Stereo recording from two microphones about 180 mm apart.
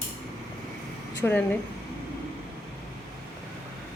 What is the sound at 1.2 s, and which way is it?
Speech, 10° left (ahead or behind).